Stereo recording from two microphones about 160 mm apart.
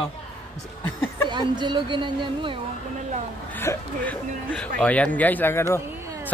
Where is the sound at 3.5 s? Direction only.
10° left (ahead or behind).